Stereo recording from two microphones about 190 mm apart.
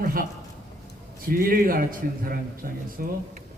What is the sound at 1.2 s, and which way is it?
A man's voice, 50° right (ahead or behind).